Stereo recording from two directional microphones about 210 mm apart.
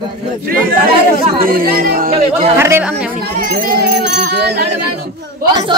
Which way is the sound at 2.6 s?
10° right (ahead or behind).